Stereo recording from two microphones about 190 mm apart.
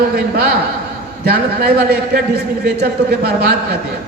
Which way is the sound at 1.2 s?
55° right (ahead or behind).